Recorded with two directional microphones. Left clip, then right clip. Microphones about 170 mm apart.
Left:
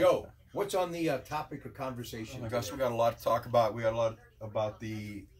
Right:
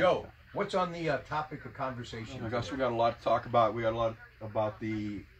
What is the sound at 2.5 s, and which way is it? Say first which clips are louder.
Speech: even; 5° right (ahead or behind).